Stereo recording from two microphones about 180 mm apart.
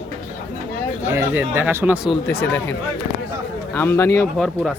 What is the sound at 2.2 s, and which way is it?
Speech, 10° left (ahead or behind).